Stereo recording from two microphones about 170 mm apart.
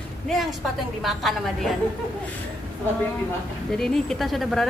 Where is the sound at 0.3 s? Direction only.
Centre (ahead or behind).